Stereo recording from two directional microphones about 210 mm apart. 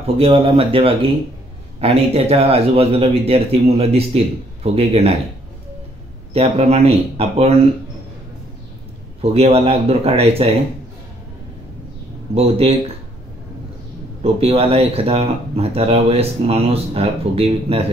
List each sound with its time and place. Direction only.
0.0 s speech: 25° right (ahead or behind)
6.3 s speech: 30° right (ahead or behind)
9.2 s speech: 30° right (ahead or behind)
12.4 s speech: 30° right (ahead or behind)
14.2 s speech: 30° right (ahead or behind)